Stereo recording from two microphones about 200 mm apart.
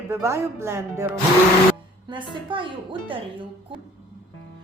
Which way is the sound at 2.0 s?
25° right (ahead or behind).